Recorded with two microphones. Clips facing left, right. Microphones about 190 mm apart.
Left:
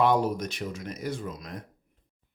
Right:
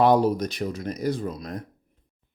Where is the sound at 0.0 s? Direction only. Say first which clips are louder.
Right 5 dB; 35° right (ahead or behind).